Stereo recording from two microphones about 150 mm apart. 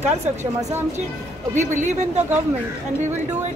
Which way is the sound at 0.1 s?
45° right (ahead or behind).